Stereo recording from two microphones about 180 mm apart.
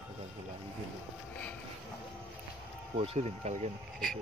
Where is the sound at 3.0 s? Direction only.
40° right (ahead or behind).